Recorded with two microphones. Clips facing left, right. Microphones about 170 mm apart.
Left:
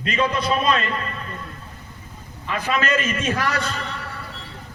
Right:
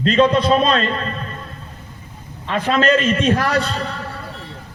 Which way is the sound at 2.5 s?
30° right (ahead or behind).